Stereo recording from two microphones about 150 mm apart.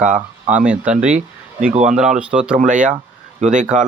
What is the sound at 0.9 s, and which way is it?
Speech, 5° right (ahead or behind).